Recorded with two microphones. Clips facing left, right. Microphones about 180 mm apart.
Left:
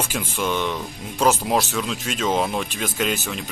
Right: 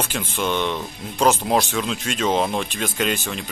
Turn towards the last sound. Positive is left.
turn(degrees=5)  # may be behind; listen again after turning